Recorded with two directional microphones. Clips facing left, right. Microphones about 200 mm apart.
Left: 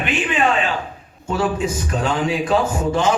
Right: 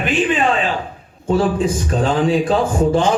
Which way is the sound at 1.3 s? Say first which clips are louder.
Right 4 dB; 30° right (ahead or behind).